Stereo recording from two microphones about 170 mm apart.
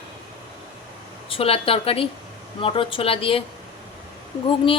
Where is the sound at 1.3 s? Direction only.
35° left (ahead or behind).